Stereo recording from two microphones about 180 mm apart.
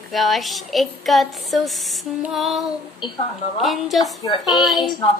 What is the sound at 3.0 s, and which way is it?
Speech, 25° left (ahead or behind).